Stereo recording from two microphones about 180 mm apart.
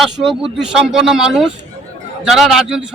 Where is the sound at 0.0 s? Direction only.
Centre (ahead or behind).